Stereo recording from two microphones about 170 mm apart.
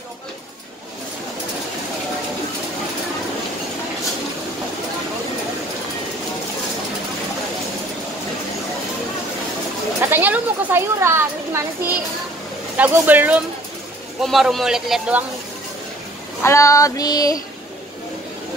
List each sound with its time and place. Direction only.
10.0 s speech: 10° right (ahead or behind)
14.2 s a man's voice: centre (ahead or behind)
16.4 s female singing: 20° left (ahead or behind)